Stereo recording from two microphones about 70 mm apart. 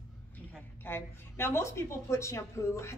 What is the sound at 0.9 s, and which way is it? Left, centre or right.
Speech, left.